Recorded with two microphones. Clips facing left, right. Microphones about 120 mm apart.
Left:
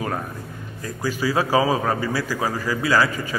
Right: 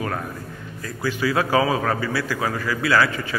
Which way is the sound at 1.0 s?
35° left (ahead or behind).